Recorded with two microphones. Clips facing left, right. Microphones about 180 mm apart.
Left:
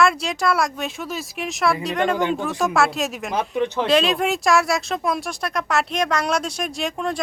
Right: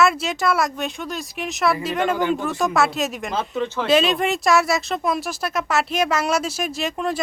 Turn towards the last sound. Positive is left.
turn(degrees=-5)  # may be behind; listen again after turning